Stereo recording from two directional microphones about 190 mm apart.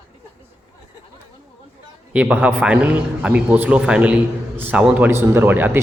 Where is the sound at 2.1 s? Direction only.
5° right (ahead or behind).